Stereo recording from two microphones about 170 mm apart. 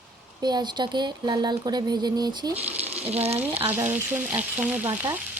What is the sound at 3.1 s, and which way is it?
Speech, 35° right (ahead or behind).